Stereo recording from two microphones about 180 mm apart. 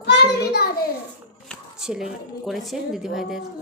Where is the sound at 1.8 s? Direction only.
5° right (ahead or behind).